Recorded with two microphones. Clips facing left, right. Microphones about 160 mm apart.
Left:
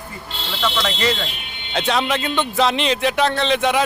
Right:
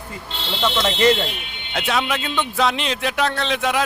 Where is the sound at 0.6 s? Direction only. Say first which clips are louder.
Right 1 dB; 20° right (ahead or behind).